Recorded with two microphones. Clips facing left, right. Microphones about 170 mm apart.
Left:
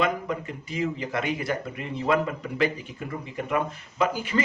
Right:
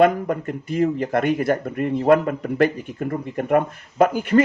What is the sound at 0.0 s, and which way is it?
A man's voice, 55° right (ahead or behind).